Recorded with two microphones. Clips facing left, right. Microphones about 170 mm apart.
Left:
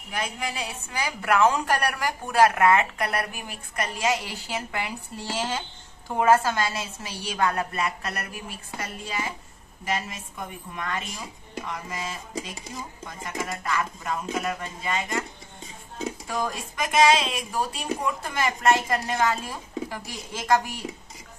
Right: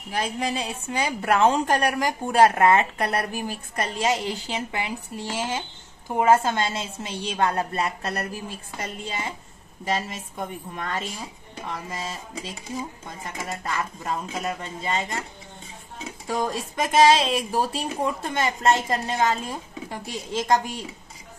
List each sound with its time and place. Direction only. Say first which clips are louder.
0.1 s a woman's voice: right 4 dB; 30° right (ahead or behind)
16.3 s a woman's voice: right 6 dB; 30° right (ahead or behind)